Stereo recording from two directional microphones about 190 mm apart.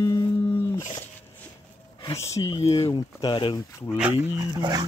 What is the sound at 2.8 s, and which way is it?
Speech, 25° left (ahead or behind).